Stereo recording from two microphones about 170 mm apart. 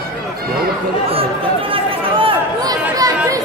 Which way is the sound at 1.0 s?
35° right (ahead or behind).